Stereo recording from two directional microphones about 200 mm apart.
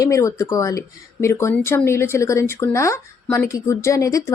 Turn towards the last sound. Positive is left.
turn(degrees=15)  # may be behind; listen again after turning